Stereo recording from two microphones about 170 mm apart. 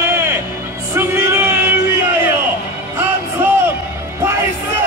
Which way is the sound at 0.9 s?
15° right (ahead or behind).